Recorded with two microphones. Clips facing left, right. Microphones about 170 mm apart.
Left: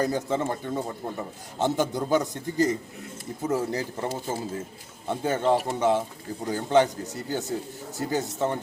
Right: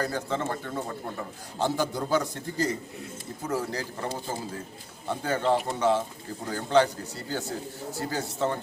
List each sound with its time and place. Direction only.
0.0 s a man's voice: 20° left (ahead or behind)